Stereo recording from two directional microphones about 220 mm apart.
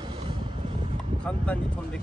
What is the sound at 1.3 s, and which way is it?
Speech, 5° left (ahead or behind).